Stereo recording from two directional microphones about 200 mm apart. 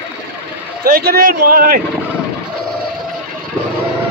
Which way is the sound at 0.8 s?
50° right (ahead or behind).